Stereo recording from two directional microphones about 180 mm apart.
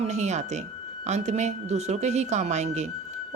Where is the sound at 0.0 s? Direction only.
40° right (ahead or behind).